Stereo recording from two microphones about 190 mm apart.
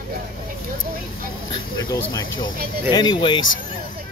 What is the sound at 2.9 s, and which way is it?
Speech, 25° left (ahead or behind).